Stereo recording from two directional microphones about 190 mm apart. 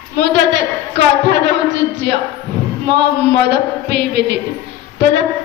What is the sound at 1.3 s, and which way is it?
Speech, 65° right (ahead or behind).